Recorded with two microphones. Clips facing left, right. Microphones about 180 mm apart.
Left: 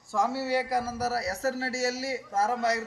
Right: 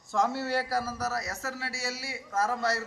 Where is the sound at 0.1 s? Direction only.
10° left (ahead or behind); by 2.4 s 40° left (ahead or behind).